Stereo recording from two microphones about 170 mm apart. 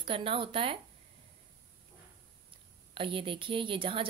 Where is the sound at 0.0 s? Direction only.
30° right (ahead or behind).